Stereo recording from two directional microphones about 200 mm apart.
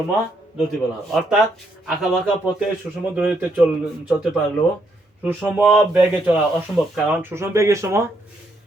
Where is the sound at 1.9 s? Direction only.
Centre (ahead or behind).